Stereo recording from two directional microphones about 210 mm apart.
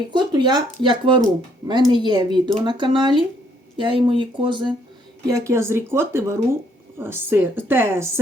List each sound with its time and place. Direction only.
0.1 s speech: 20° right (ahead or behind)